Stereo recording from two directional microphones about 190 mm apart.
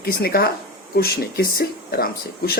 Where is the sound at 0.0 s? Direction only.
55° left (ahead or behind).